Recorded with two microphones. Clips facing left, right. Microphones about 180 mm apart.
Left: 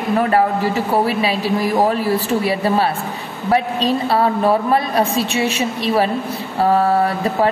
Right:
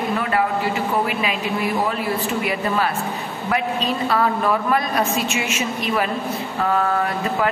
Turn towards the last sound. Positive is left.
turn(degrees=35)  # may be behind; listen again after turning